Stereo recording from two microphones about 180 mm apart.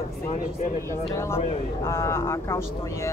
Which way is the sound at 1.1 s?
15° left (ahead or behind).